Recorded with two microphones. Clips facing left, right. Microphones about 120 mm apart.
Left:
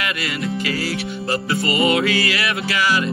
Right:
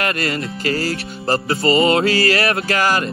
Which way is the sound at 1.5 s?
30° right (ahead or behind).